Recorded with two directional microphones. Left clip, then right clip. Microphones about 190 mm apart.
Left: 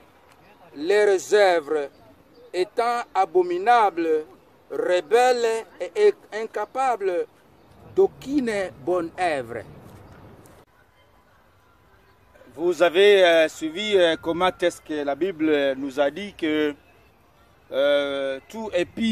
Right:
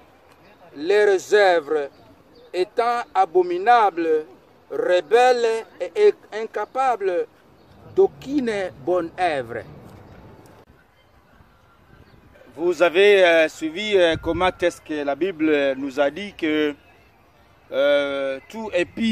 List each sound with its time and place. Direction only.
0.7 s speech: 10° left (ahead or behind)
12.5 s speech: 15° left (ahead or behind)